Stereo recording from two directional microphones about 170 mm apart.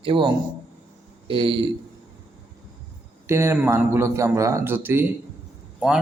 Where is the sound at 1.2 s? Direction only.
30° right (ahead or behind).